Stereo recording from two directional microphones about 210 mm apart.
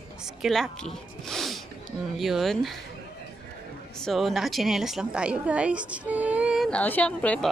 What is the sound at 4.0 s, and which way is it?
A woman's voice, centre (ahead or behind).